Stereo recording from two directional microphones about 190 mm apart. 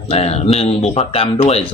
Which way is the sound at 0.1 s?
35° left (ahead or behind).